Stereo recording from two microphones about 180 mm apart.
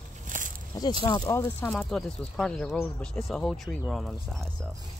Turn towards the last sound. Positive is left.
turn(degrees=0)  # may be behind; listen again after turning